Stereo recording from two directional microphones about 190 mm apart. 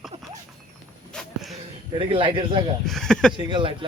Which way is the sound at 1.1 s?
Centre (ahead or behind).